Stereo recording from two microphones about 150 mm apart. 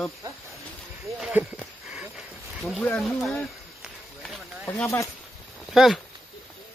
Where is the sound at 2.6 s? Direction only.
Centre (ahead or behind).